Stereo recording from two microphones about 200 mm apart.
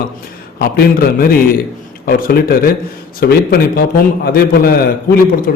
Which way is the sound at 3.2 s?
50° left (ahead or behind).